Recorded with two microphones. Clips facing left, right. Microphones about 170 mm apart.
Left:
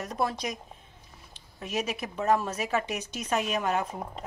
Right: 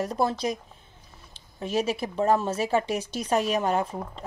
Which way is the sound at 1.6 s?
30° right (ahead or behind).